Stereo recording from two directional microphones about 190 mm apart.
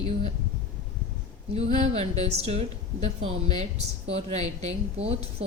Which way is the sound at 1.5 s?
35° right (ahead or behind).